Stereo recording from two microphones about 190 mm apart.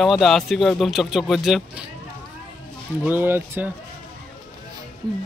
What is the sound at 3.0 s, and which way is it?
Speech, 10° right (ahead or behind).